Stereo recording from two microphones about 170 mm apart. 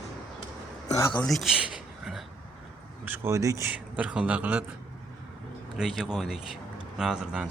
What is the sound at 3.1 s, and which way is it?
Speech, 15° right (ahead or behind).